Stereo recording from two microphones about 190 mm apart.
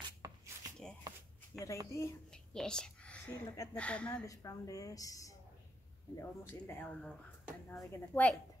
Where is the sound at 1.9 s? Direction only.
15° left (ahead or behind).